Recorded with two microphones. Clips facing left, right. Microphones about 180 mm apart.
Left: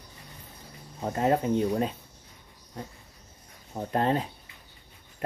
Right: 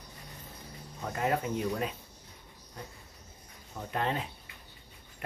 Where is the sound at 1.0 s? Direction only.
35° left (ahead or behind).